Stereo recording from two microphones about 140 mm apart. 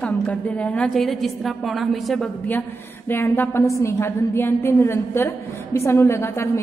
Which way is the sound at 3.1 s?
15° left (ahead or behind).